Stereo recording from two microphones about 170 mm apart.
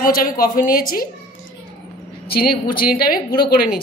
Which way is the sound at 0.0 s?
60° left (ahead or behind).